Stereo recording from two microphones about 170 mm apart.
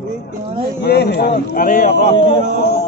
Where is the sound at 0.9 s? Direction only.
70° left (ahead or behind).